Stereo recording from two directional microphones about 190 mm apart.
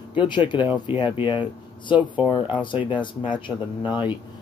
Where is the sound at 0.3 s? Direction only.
25° left (ahead or behind).